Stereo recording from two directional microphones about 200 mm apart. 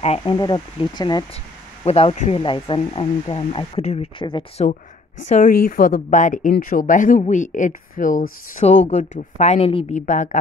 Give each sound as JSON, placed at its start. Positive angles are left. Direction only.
{"t": 0.2, "sound": "speech", "side_deg": 20}
{"t": 5.3, "sound": "speech", "side_deg": 45}